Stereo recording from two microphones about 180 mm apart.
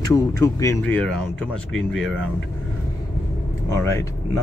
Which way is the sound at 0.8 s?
5° left (ahead or behind).